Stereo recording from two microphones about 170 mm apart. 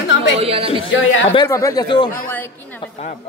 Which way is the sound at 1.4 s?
15° left (ahead or behind).